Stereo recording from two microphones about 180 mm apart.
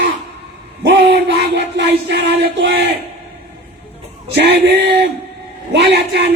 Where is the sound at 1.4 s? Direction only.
75° right (ahead or behind).